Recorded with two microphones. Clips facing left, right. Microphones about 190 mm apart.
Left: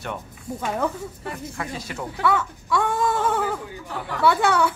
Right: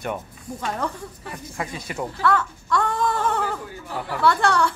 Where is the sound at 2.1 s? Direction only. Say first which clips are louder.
Even; 5° left (ahead or behind).